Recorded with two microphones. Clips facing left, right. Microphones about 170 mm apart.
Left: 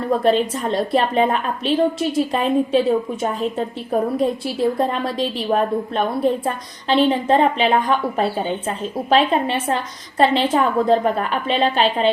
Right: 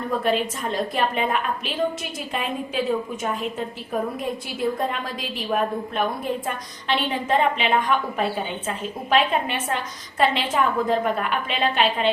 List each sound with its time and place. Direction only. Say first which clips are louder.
0.3 s a woman's voice: left 6 dB; 35° left (ahead or behind)
4.9 s a woman's voice: left 8 dB; 35° left (ahead or behind)